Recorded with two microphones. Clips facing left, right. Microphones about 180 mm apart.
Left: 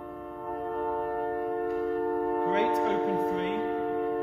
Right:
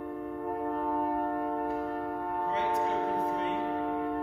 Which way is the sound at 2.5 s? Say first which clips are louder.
Left 2 dB; 75° left (ahead or behind).